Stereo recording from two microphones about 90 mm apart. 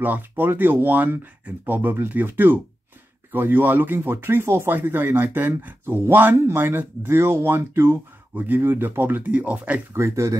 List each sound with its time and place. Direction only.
0.0 s speech: 20° right (ahead or behind)
9.9 s speech: 30° right (ahead or behind)